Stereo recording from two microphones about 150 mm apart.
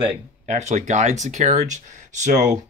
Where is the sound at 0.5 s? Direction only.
50° right (ahead or behind).